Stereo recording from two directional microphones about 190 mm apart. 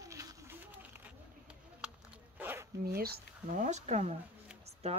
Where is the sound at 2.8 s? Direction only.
55° right (ahead or behind); by 4.1 s 35° right (ahead or behind).